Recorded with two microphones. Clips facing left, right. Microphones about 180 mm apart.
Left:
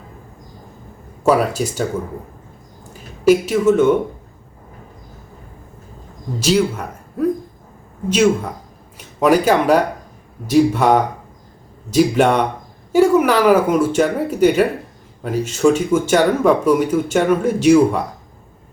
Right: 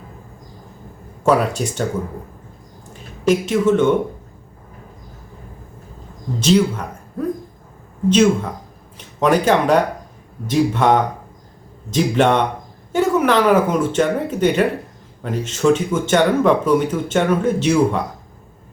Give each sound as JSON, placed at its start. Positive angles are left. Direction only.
{"t": 1.2, "sound": "speech", "side_deg": 5}
{"t": 2.9, "sound": "speech", "side_deg": 5}
{"t": 6.4, "sound": "speech", "side_deg": 10}
{"t": 8.1, "sound": "speech", "side_deg": 10}